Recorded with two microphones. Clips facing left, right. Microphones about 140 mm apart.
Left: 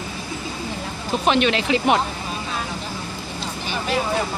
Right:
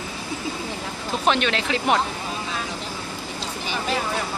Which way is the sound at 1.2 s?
5° left (ahead or behind).